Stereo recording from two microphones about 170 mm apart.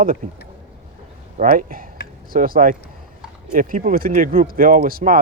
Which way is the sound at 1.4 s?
55° right (ahead or behind).